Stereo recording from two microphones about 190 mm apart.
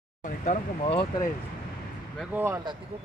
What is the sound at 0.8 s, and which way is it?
Speech, 25° left (ahead or behind).